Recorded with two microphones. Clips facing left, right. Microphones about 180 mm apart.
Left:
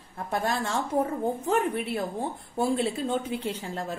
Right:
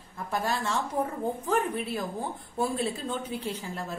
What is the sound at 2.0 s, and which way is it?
A woman's voice, 30° left (ahead or behind).